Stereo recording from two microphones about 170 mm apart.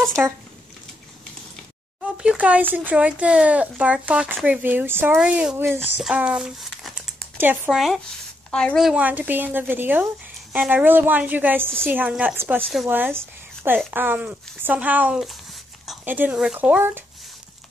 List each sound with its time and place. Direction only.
0.2 s speech: 10° right (ahead or behind)
2.1 s speech: 5° right (ahead or behind)
8.5 s speech: 5° left (ahead or behind)